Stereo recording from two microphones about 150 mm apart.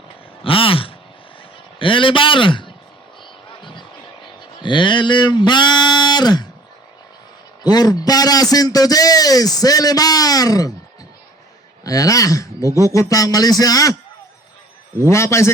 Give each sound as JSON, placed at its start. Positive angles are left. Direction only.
{"t": 0.4, "sound": "throat clearing", "side_deg": 35}
{"t": 1.8, "sound": "a man's voice", "side_deg": 35}
{"t": 3.6, "sound": "a sound", "side_deg": 30}
{"t": 4.6, "sound": "a man's voice", "side_deg": 30}
{"t": 7.6, "sound": "a man's voice", "side_deg": 25}
{"t": 11.8, "sound": "a man's voice", "side_deg": 25}
{"t": 15.0, "sound": "a man's voice", "side_deg": 20}